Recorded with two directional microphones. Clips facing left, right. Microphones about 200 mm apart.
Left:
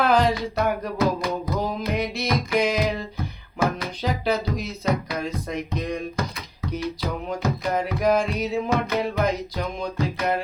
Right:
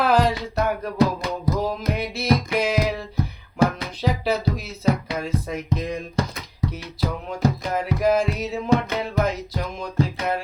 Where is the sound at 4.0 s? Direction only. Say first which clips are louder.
Right 2 dB; centre (ahead or behind).